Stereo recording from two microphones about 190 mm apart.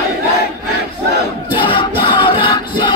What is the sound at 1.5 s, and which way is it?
Music, 25° left (ahead or behind).